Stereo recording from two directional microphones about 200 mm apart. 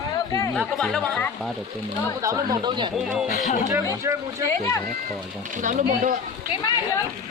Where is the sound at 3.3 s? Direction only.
40° left (ahead or behind).